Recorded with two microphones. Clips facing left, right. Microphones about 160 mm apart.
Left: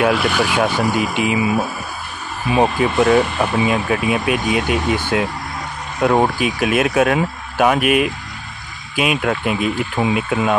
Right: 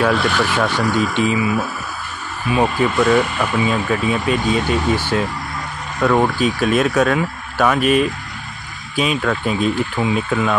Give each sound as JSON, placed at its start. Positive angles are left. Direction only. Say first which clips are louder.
{"t": 0.0, "sound": "speech", "louder": "left 1 dB", "side_deg": 5}
{"t": 3.0, "sound": "speech", "louder": "left 2 dB", "side_deg": 25}
{"t": 3.6, "sound": "speech", "louder": "left 1 dB", "side_deg": 15}